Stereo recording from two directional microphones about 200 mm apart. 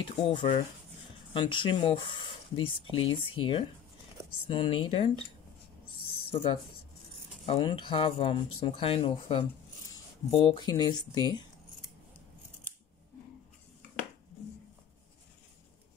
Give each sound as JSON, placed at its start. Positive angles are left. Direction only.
{"t": 0.0, "sound": "speech", "side_deg": 25}
{"t": 4.4, "sound": "speech", "side_deg": 25}
{"t": 6.0, "sound": "a sound", "side_deg": 30}
{"t": 7.4, "sound": "speech", "side_deg": 30}